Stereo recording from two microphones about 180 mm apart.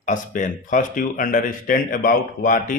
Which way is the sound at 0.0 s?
45° left (ahead or behind).